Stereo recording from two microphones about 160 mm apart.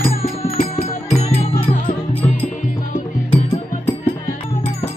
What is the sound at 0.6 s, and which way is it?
Music, 50° left (ahead or behind).